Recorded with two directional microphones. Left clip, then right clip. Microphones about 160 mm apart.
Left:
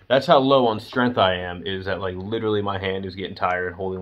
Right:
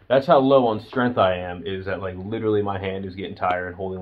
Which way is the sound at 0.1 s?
15° left (ahead or behind).